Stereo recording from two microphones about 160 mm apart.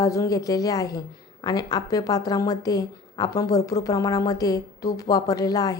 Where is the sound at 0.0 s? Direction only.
20° left (ahead or behind).